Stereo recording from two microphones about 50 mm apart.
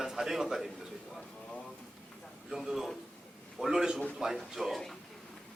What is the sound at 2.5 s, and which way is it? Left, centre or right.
A man's voice, centre.